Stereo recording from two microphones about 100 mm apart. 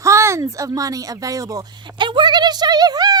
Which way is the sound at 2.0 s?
50° right (ahead or behind).